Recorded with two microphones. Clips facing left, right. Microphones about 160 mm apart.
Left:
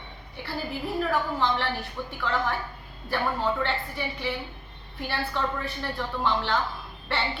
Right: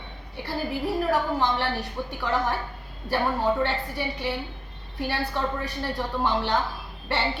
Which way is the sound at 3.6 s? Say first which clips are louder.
Right 3 dB; 15° right (ahead or behind).